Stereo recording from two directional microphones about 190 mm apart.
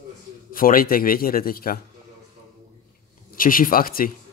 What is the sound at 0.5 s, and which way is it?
A man's voice, 50° left (ahead or behind).